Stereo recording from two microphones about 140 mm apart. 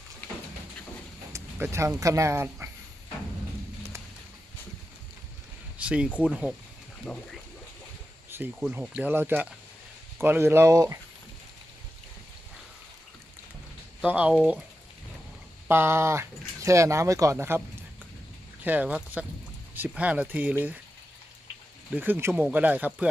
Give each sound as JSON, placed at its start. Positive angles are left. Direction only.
{"t": 1.3, "sound": "speech", "side_deg": -15}
{"t": 5.7, "sound": "a sound", "side_deg": -10}
{"t": 6.1, "sound": "speech", "side_deg": -10}
{"t": 7.0, "sound": "speech", "side_deg": 5}
{"t": 8.6, "sound": "speech", "side_deg": -5}
{"t": 14.0, "sound": "speech", "side_deg": -10}
{"t": 15.7, "sound": "speech", "side_deg": -15}
{"t": 18.6, "sound": "speech", "side_deg": -10}
{"t": 21.9, "sound": "speech", "side_deg": -15}